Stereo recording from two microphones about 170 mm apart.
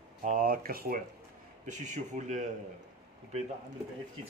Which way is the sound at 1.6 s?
45° right (ahead or behind).